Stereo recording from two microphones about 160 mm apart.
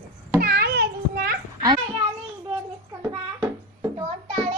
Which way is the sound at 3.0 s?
15° right (ahead or behind).